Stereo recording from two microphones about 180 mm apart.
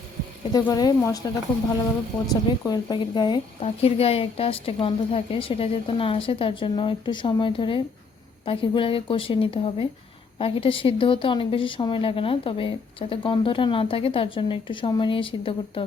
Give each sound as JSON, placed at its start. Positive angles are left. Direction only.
{"t": 0.5, "sound": "a woman's voice", "side_deg": 20}
{"t": 2.3, "sound": "a woman's voice", "side_deg": 20}